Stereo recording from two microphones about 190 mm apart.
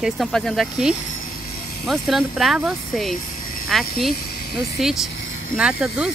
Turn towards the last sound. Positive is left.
turn(degrees=-5)  # may be behind; listen again after turning